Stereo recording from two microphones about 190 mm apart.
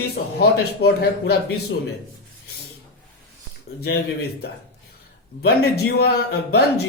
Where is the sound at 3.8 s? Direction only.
55° left (ahead or behind).